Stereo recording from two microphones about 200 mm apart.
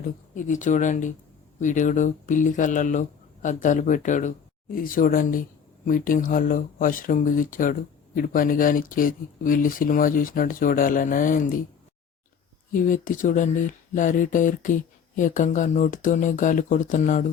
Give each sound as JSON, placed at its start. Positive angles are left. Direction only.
{"t": 0.3, "sound": "speech", "side_deg": 40}
{"t": 12.9, "sound": "speech", "side_deg": 40}